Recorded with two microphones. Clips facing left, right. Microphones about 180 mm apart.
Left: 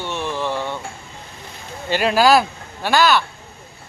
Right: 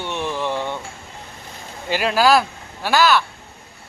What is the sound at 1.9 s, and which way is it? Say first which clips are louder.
Speech: left 2 dB; centre (ahead or behind).